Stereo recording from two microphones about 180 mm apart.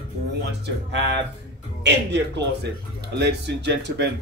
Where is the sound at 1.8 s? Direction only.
75° right (ahead or behind).